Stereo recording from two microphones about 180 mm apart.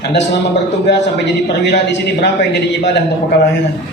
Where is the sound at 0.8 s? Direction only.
70° left (ahead or behind).